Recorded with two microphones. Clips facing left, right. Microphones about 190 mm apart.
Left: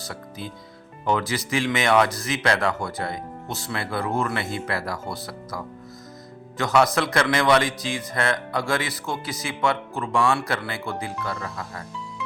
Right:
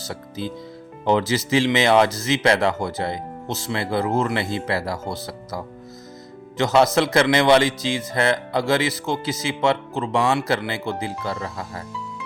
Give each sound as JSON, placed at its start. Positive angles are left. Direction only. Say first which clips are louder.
{"t": 0.1, "sound": "speech", "louder": "right 8 dB", "side_deg": -25}
{"t": 6.7, "sound": "speech", "louder": "right 3 dB", "side_deg": -25}